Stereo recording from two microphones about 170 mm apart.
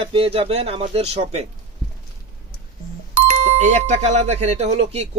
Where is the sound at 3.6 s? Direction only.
45° right (ahead or behind).